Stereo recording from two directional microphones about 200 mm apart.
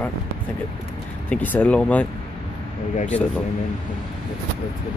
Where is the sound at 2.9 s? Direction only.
35° left (ahead or behind).